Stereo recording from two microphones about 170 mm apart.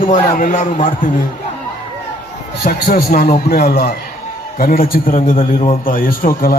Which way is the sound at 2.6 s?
60° left (ahead or behind).